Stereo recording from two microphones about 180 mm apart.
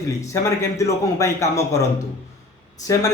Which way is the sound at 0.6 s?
15° left (ahead or behind).